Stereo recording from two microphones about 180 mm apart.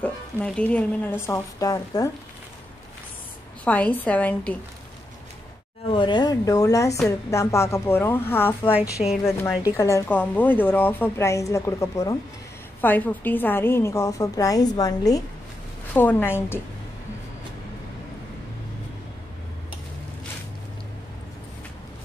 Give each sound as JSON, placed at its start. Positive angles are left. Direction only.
{"t": 0.0, "sound": "a woman's voice", "side_deg": 5}
{"t": 1.2, "sound": "speech", "side_deg": 20}
{"t": 3.6, "sound": "a woman's voice", "side_deg": 10}
{"t": 5.9, "sound": "a woman's voice", "side_deg": 25}
{"t": 9.0, "sound": "a woman's voice", "side_deg": 35}
{"t": 9.8, "sound": "a woman's voice", "side_deg": 15}